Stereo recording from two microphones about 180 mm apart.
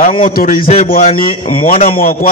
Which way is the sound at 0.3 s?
55° left (ahead or behind).